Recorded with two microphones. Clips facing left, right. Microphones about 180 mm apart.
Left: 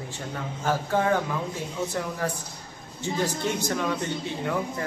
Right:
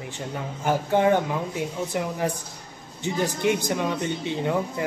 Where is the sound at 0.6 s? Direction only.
20° right (ahead or behind).